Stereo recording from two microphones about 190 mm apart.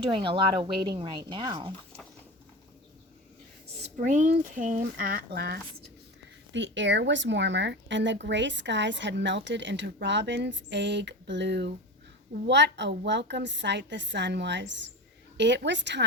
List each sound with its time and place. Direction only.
0.2 s speech: 25° right (ahead or behind)
3.9 s speech: 40° right (ahead or behind)
6.5 s speech: 70° right (ahead or behind)